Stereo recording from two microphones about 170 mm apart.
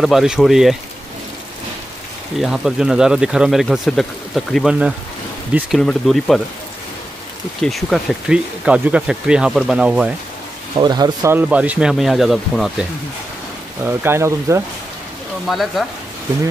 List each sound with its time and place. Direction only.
0.0 s speech: centre (ahead or behind)
2.3 s speech: centre (ahead or behind)
7.6 s speech: centre (ahead or behind)
10.8 s speech: 25° right (ahead or behind)
11.3 s speech: 10° right (ahead or behind)
13.8 s speech: 15° right (ahead or behind)
15.4 s speech: centre (ahead or behind)